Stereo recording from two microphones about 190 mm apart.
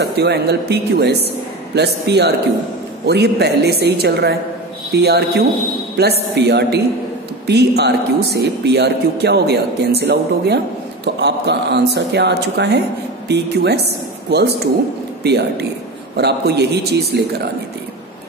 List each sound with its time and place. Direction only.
0.0 s speech: 60° right (ahead or behind)